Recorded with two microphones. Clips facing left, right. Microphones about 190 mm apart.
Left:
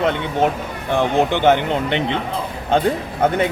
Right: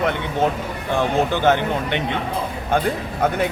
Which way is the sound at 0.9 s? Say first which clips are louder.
Left 2 dB; 20° left (ahead or behind).